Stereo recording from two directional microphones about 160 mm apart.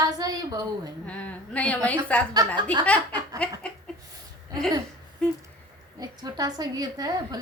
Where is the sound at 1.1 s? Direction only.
10° left (ahead or behind).